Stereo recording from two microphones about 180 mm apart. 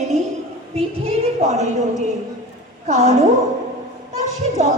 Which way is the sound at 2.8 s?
40° right (ahead or behind).